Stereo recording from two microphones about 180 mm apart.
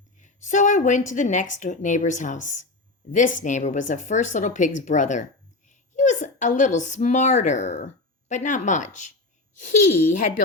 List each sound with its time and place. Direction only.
0.2 s a woman's voice: 45° left (ahead or behind)